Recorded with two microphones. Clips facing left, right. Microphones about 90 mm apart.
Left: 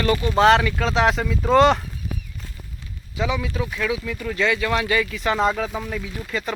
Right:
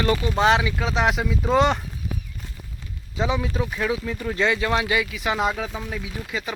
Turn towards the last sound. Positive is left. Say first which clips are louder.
# left 2 dB
turn(degrees=-10)  # may be behind; listen again after turning